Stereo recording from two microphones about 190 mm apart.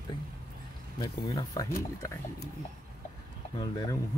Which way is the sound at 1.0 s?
20° left (ahead or behind).